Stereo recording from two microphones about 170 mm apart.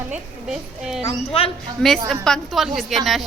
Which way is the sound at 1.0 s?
35° left (ahead or behind).